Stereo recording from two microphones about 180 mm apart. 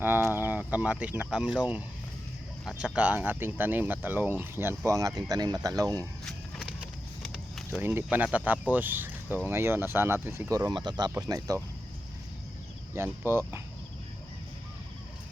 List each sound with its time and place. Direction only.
0.0 s speech: 10° right (ahead or behind)
7.2 s a sound: centre (ahead or behind)
8.4 s speech: 10° right (ahead or behind)
10.7 s speech: 25° right (ahead or behind)
12.9 s speech: 15° right (ahead or behind)